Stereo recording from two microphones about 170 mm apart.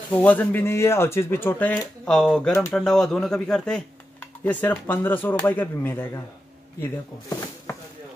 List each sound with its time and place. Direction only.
0.1 s speech: 10° left (ahead or behind)